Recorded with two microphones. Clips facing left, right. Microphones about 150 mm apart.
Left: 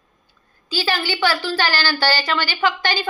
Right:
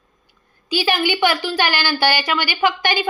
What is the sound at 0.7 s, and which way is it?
A woman's voice, 15° right (ahead or behind).